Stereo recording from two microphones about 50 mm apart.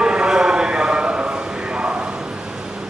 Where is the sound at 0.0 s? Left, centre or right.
Centre.